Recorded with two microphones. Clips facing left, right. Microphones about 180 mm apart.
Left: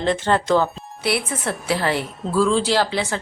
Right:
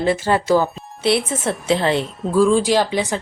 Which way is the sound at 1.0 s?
25° right (ahead or behind).